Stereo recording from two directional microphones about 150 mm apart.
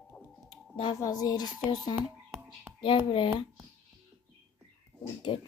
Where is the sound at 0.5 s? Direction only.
30° left (ahead or behind).